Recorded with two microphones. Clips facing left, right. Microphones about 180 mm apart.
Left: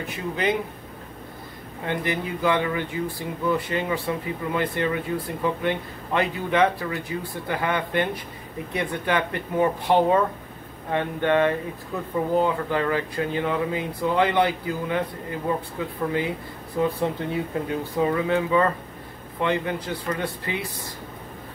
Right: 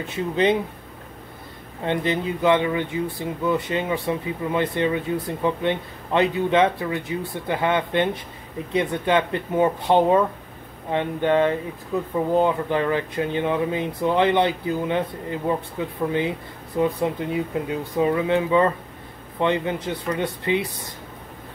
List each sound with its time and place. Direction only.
0.0 s speech: 25° right (ahead or behind)
1.9 s speech: 25° right (ahead or behind)
16.1 s speech: 25° right (ahead or behind)